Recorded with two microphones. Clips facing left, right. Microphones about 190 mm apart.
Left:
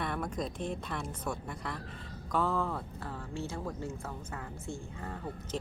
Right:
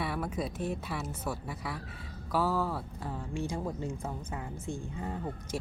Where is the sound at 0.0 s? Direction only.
5° right (ahead or behind).